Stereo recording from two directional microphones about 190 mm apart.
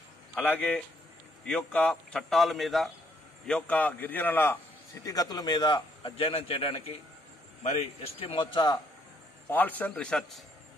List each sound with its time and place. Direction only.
0.3 s a man's voice: 10° left (ahead or behind)
9.5 s a man's voice: 10° left (ahead or behind)